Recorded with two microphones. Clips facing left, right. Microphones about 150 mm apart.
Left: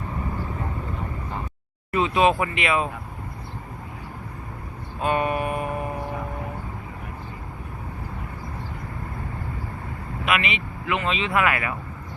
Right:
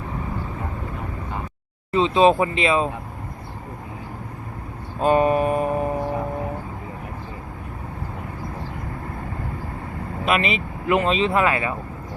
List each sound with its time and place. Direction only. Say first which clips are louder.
1.9 s speech: right 4 dB; 25° right (ahead or behind)
4.9 s a sound: right 6 dB; 35° right (ahead or behind)
10.2 s speech: right 3 dB; 35° right (ahead or behind)